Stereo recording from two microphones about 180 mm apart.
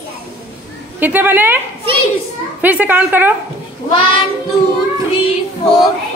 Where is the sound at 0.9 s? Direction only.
10° right (ahead or behind).